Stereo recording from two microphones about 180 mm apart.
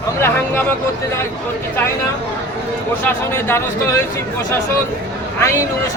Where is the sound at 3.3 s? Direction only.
15° left (ahead or behind).